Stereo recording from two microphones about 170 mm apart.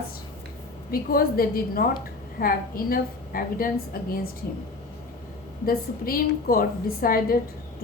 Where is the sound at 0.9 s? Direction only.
60° left (ahead or behind).